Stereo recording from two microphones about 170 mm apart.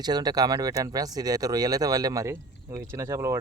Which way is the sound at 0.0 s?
25° right (ahead or behind).